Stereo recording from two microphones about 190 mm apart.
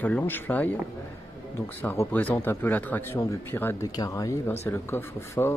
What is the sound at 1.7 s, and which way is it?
Speech, 10° left (ahead or behind).